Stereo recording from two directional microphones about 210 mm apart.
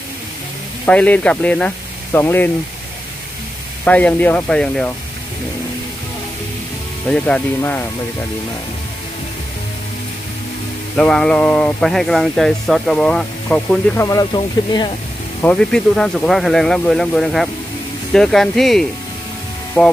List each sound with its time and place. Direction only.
0.8 s speech: 5° left (ahead or behind)
3.8 s speech: 5° left (ahead or behind)
7.1 s speech: 5° left (ahead or behind)
11.0 s speech: 5° left (ahead or behind)
14.0 s speech: 20° left (ahead or behind)
15.4 s speech: 5° left (ahead or behind)